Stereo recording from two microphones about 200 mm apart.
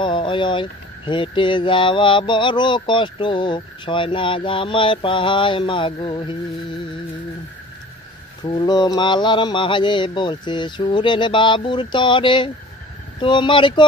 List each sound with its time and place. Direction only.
0.0 s speech: 25° left (ahead or behind)
8.5 s speech: 20° left (ahead or behind)